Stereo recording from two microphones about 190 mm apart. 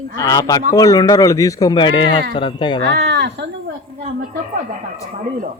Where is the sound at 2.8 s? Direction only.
60° right (ahead or behind).